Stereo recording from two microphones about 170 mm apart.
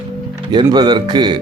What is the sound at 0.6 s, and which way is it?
Speech, 25° right (ahead or behind).